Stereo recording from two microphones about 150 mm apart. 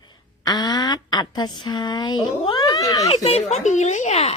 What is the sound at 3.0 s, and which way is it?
Speech, 45° left (ahead or behind).